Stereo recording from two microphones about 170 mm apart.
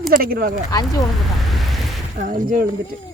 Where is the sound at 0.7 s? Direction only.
20° left (ahead or behind).